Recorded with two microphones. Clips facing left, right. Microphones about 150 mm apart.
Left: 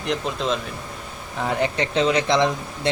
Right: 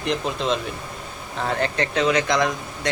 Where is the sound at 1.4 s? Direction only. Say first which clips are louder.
Left 1 dB; 15° left (ahead or behind); by 2.9 s 30° left (ahead or behind).